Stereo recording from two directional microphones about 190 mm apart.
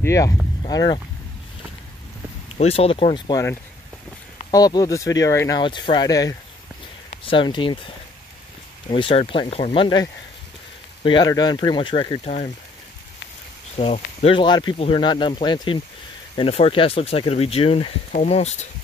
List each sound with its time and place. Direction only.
0.0 s speech: 15° left (ahead or behind)
2.5 s speech: 30° left (ahead or behind)
4.5 s speech: 20° left (ahead or behind)
8.8 s speech: 25° left (ahead or behind)
11.1 s speech: 25° left (ahead or behind)
13.7 s speech: 35° left (ahead or behind)